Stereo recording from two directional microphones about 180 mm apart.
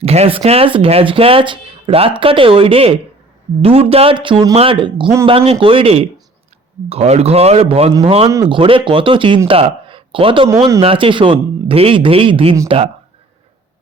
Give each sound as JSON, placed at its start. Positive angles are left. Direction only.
{"t": 0.0, "sound": "a man's voice", "side_deg": -35}